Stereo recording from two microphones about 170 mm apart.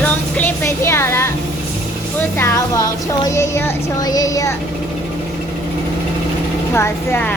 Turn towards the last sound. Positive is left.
turn(degrees=15)  # may be behind; listen again after turning